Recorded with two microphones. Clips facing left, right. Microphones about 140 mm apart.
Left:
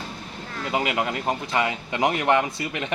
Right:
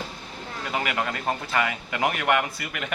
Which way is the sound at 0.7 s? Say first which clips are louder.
Left 3 dB; 20° left (ahead or behind).